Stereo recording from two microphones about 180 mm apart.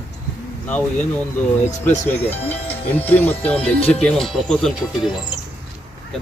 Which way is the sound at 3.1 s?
10° left (ahead or behind).